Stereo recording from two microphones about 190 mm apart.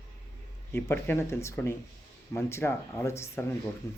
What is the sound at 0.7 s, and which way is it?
Speech, 10° left (ahead or behind).